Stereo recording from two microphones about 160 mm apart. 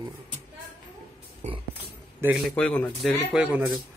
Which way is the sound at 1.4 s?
45° right (ahead or behind).